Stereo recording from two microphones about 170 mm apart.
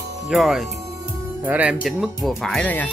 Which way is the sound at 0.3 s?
Centre (ahead or behind).